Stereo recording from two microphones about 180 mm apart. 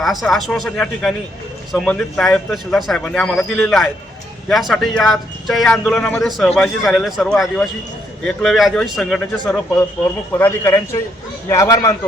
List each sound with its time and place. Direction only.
0.0 s a man's voice: centre (ahead or behind); by 11.9 s 20° left (ahead or behind)